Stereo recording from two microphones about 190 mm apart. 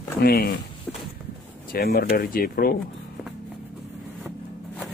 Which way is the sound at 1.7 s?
50° left (ahead or behind).